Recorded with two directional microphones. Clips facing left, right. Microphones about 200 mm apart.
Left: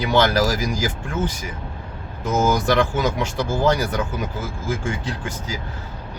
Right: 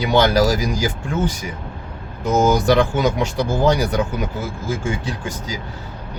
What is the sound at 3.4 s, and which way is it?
Speech, 15° right (ahead or behind).